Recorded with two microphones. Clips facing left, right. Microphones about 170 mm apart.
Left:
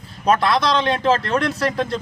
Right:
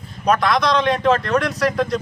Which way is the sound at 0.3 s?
30° left (ahead or behind).